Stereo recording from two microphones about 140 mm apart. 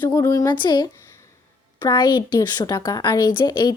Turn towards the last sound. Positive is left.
turn(degrees=30)  # may be behind; listen again after turning